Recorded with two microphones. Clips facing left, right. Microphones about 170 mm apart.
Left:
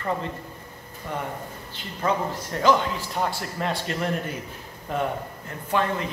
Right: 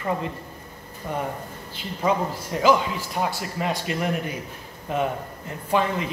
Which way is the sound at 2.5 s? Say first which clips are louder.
Right 1 dB; 10° right (ahead or behind).